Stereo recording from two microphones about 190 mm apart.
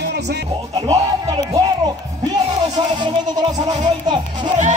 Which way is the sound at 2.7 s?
20° right (ahead or behind).